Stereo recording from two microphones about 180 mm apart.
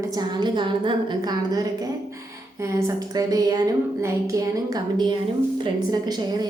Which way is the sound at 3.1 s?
20° right (ahead or behind).